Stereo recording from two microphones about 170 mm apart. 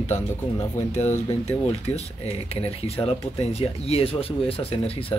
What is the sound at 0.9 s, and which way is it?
Speech, 40° left (ahead or behind).